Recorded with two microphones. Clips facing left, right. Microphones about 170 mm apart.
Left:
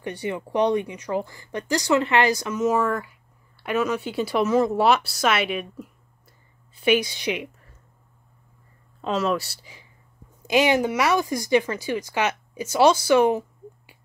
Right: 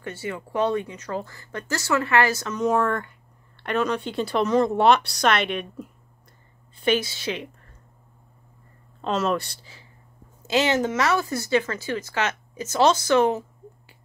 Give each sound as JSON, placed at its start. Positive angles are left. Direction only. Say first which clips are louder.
{"t": 0.0, "sound": "speech", "louder": "left 3 dB", "side_deg": 15}
{"t": 2.6, "sound": "a woman's voice", "louder": "even", "side_deg": 0}
{"t": 9.0, "sound": "speech", "louder": "even", "side_deg": 0}